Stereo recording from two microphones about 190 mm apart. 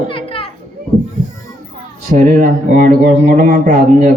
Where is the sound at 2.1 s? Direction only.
45° right (ahead or behind).